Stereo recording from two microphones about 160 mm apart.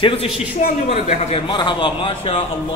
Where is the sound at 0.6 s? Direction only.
65° left (ahead or behind).